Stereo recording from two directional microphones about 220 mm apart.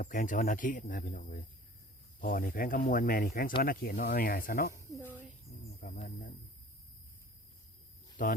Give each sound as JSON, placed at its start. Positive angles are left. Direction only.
{"t": 0.0, "sound": "speech", "side_deg": 35}
{"t": 5.5, "sound": "insect", "side_deg": 30}
{"t": 5.8, "sound": "speech", "side_deg": 35}
{"t": 8.2, "sound": "speech", "side_deg": 35}